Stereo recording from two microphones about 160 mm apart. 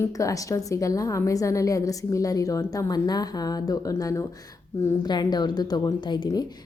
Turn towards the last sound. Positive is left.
turn(degrees=25)  # may be behind; listen again after turning